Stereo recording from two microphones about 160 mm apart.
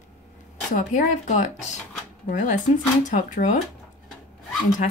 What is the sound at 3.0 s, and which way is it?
Speech, 50° left (ahead or behind).